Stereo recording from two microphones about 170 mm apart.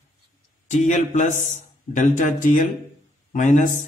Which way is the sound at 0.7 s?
45° left (ahead or behind).